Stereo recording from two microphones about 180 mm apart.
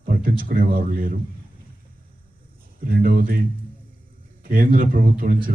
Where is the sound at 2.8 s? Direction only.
55° right (ahead or behind).